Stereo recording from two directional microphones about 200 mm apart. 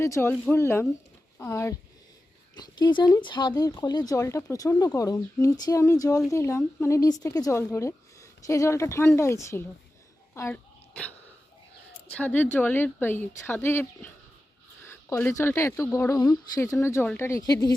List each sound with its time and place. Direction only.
0.0 s speech: 10° left (ahead or behind)
10.3 s throat clearing: 10° left (ahead or behind)
12.1 s speech: 10° left (ahead or behind)